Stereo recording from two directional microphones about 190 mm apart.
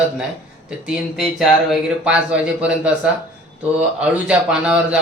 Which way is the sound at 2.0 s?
5° right (ahead or behind).